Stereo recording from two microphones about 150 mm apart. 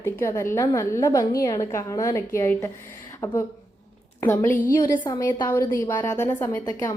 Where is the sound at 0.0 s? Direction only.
20° left (ahead or behind).